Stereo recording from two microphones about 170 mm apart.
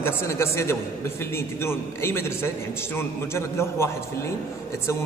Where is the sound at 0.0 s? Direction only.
15° left (ahead or behind).